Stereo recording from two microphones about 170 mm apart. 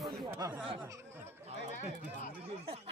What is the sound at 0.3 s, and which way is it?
Speech, 15° right (ahead or behind).